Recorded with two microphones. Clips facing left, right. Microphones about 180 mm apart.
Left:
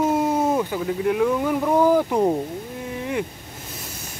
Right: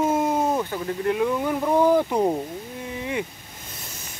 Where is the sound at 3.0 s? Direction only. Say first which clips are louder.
Left 2 dB; centre (ahead or behind).